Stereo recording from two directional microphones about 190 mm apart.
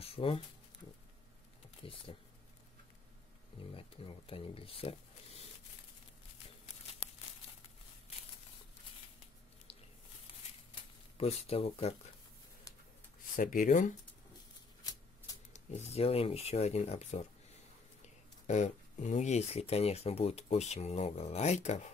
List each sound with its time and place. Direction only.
0.0 s speech: 30° left (ahead or behind)
1.8 s speech: 30° left (ahead or behind)
3.7 s speech: 30° left (ahead or behind)
10.7 s a sound: 30° left (ahead or behind)
13.4 s speech: 45° left (ahead or behind)
15.5 s speech: 35° left (ahead or behind)
18.5 s speech: 40° left (ahead or behind)